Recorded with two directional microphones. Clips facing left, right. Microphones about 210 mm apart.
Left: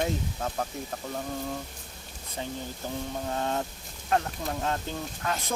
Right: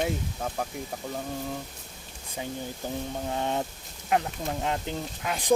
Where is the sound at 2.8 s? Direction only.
15° right (ahead or behind).